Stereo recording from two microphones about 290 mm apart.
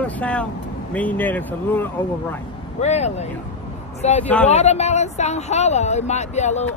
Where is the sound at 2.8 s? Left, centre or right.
Left.